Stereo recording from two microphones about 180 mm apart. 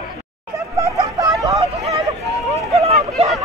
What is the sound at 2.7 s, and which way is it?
Hubbub, 35° right (ahead or behind).